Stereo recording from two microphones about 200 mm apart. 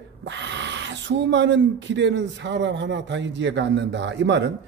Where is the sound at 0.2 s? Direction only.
60° right (ahead or behind).